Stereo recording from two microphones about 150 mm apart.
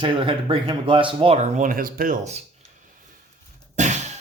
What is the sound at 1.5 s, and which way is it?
Speech, 65° right (ahead or behind).